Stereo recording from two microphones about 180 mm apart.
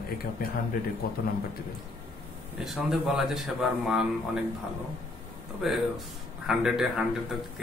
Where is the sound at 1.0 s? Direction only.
55° left (ahead or behind).